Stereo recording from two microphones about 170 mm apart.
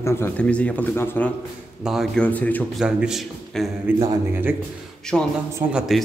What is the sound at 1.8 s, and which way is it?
Speech, centre (ahead or behind).